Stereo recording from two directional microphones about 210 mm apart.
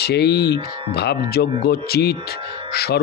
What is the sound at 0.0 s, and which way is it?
Speech, 50° left (ahead or behind).